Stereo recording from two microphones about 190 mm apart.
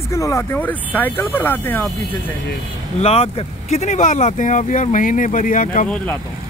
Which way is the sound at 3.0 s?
30° left (ahead or behind).